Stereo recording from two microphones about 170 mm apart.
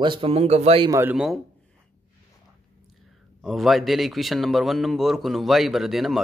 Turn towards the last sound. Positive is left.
turn(degrees=0)  # may be behind; listen again after turning